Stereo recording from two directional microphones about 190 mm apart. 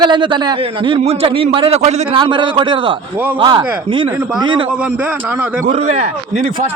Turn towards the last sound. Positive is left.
turn(degrees=-35)  # may be behind; listen again after turning